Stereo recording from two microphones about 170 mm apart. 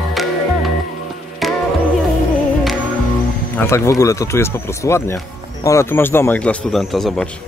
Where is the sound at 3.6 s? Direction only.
15° left (ahead or behind).